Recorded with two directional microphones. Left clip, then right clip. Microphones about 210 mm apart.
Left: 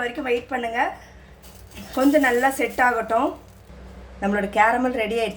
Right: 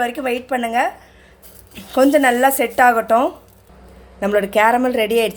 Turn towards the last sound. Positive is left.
turn(degrees=-45)  # may be behind; listen again after turning